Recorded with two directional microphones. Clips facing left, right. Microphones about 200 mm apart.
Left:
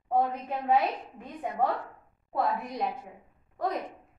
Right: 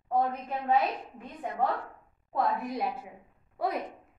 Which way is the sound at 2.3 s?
Centre (ahead or behind).